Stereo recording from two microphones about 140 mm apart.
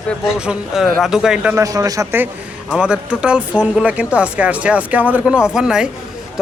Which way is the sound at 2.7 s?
5° right (ahead or behind).